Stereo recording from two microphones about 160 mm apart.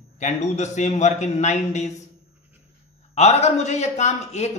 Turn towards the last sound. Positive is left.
turn(degrees=45)  # may be behind; listen again after turning